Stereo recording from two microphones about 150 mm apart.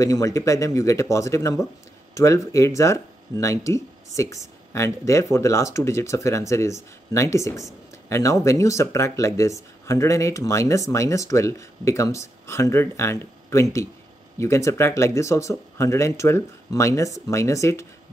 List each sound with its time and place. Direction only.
0.0 s speech: 20° left (ahead or behind)